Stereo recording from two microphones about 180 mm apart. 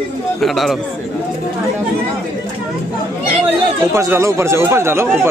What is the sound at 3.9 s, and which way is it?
Speech, 15° right (ahead or behind).